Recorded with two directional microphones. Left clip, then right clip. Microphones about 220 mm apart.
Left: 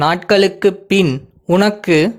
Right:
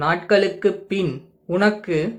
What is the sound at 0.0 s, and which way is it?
Speech, 50° left (ahead or behind).